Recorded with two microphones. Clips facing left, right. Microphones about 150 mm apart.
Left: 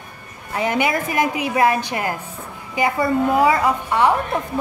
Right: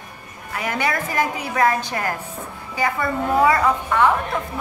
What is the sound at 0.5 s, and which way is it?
A woman's voice, 25° left (ahead or behind).